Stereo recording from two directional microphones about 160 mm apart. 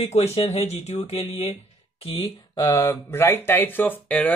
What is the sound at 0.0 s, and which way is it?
Speech, 40° left (ahead or behind).